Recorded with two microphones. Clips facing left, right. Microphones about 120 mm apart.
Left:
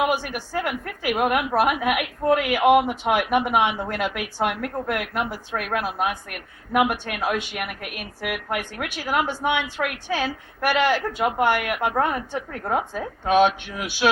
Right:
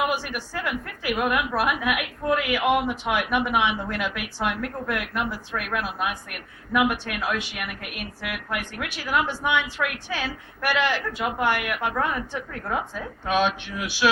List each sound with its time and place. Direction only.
0.1 s a woman's voice: 50° left (ahead or behind)